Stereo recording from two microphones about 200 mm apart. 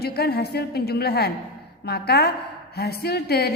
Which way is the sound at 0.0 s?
50° left (ahead or behind).